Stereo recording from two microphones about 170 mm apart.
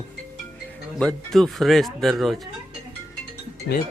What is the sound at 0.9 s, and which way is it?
Speech, 5° left (ahead or behind).